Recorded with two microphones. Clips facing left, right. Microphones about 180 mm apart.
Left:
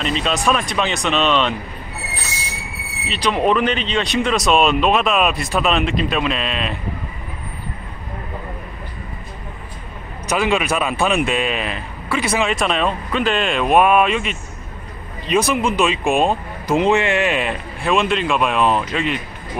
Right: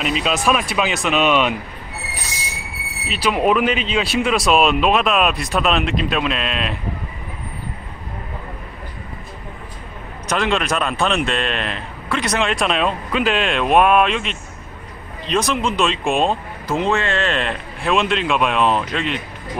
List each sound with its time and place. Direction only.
0.0 s a man's voice: 5° right (ahead or behind)
3.1 s a man's voice: 5° right (ahead or behind)
10.2 s a man's voice: 5° left (ahead or behind)